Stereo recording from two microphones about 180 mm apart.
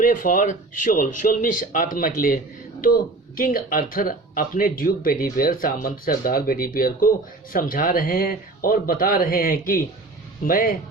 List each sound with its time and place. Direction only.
0.0 s speech: 50° left (ahead or behind)